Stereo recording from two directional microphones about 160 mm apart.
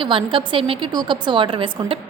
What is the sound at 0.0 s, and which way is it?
A woman's voice, 35° right (ahead or behind).